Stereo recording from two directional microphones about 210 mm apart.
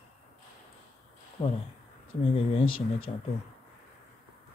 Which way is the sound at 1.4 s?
25° left (ahead or behind).